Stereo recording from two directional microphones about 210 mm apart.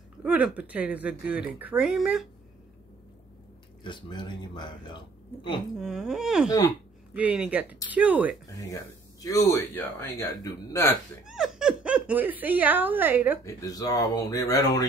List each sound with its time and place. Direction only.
0.2 s speech: 5° right (ahead or behind)
3.8 s speech: 20° left (ahead or behind)
5.8 s speech: centre (ahead or behind)
8.5 s speech: 15° left (ahead or behind)
11.2 s speech: centre (ahead or behind)
13.5 s speech: 15° left (ahead or behind)